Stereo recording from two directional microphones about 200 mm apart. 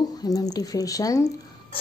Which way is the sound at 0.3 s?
20° left (ahead or behind).